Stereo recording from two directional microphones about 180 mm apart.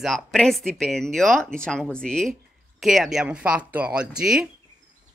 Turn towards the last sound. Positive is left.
turn(degrees=0)  # may be behind; listen again after turning